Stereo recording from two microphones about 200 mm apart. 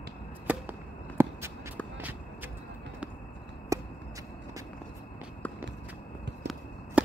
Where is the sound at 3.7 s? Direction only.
15° right (ahead or behind).